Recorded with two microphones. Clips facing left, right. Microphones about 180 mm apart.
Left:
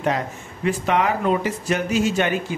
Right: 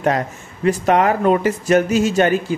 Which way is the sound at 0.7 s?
45° right (ahead or behind).